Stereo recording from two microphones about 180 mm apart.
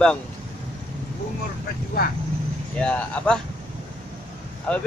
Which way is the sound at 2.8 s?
5° left (ahead or behind).